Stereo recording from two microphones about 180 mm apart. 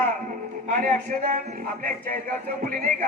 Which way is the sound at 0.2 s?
50° right (ahead or behind).